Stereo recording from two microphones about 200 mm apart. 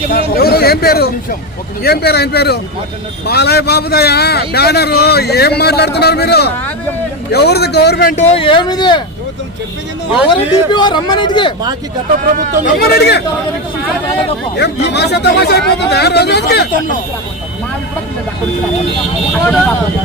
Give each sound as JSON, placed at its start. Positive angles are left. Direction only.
{"t": 0.3, "sound": "a man's voice", "side_deg": 50}
{"t": 8.1, "sound": "speech", "side_deg": 25}
{"t": 10.1, "sound": "speech", "side_deg": 25}
{"t": 12.2, "sound": "speech", "side_deg": -45}
{"t": 12.6, "sound": "speech", "side_deg": 50}
{"t": 14.6, "sound": "speech", "side_deg": 60}